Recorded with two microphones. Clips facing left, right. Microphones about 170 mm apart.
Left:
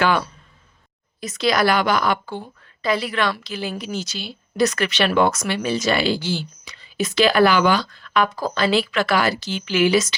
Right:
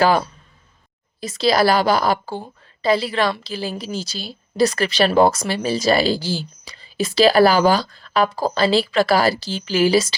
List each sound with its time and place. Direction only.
0.0 s a woman's voice: 35° right (ahead or behind)